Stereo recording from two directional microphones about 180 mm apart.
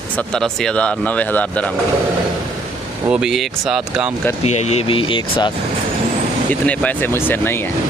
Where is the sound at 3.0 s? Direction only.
5° right (ahead or behind).